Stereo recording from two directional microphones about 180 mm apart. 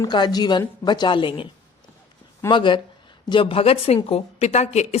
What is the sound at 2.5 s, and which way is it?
A woman's voice, 25° left (ahead or behind).